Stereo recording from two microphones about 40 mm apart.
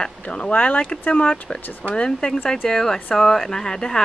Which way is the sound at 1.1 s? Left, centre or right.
Left.